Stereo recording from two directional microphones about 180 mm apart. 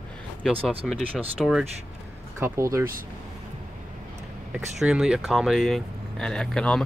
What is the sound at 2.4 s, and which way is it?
Speech, 15° right (ahead or behind).